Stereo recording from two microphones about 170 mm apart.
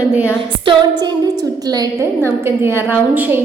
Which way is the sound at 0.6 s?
25° right (ahead or behind).